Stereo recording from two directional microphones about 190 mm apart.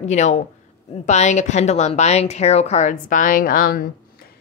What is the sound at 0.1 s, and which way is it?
Speech, 40° left (ahead or behind).